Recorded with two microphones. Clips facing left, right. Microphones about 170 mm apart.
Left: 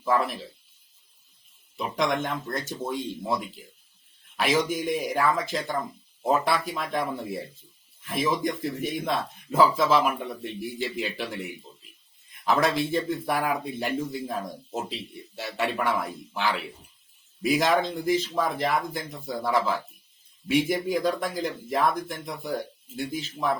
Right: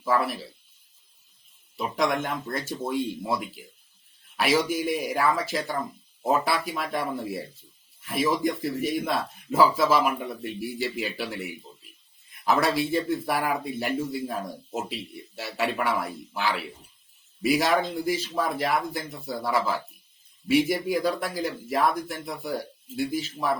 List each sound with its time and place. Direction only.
0.0 s speech: 5° right (ahead or behind)
1.7 s speech: centre (ahead or behind)